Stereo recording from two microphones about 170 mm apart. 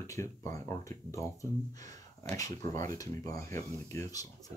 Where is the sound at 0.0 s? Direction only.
20° left (ahead or behind).